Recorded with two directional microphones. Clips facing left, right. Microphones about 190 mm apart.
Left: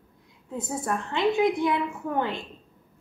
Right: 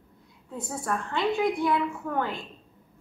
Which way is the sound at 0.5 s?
20° left (ahead or behind).